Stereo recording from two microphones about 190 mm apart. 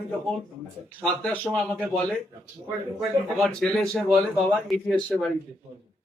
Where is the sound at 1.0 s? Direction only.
5° left (ahead or behind).